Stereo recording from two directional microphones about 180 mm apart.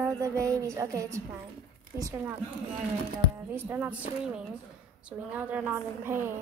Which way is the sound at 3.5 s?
10° right (ahead or behind).